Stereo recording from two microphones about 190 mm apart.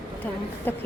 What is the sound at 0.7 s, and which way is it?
Speech, 10° left (ahead or behind).